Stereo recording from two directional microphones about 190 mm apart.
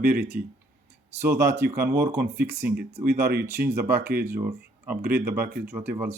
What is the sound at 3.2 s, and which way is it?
Speech, 55° right (ahead or behind).